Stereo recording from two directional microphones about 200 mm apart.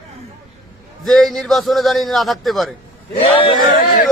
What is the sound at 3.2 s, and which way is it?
Speech, 25° left (ahead or behind).